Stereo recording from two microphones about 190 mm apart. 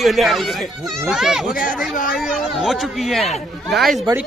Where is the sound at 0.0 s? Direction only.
Centre (ahead or behind).